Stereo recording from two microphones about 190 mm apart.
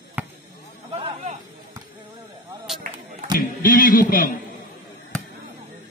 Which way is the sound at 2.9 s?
25° right (ahead or behind).